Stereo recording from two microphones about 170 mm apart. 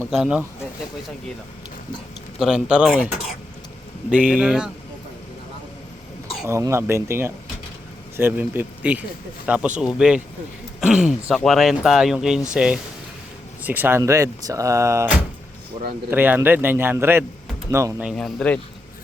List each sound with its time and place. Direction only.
0.1 s speech: 5° right (ahead or behind)
2.4 s speech: 5° right (ahead or behind)
4.1 s speech: 10° right (ahead or behind)
6.5 s speech: 15° right (ahead or behind)
10.8 s a sound: 5° right (ahead or behind)
11.3 s speech: centre (ahead or behind); by 17.9 s 15° right (ahead or behind)
18.0 s speech: centre (ahead or behind)